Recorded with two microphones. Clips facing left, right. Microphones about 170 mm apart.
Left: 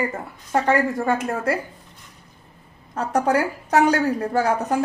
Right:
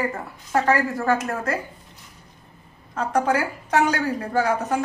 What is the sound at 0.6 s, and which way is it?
Speech, 20° left (ahead or behind).